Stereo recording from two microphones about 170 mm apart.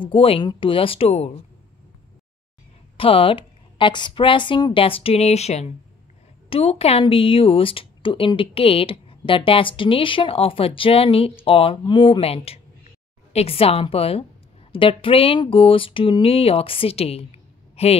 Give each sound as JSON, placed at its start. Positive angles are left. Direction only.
{"t": 0.0, "sound": "speech", "side_deg": 30}
{"t": 3.0, "sound": "speech", "side_deg": 35}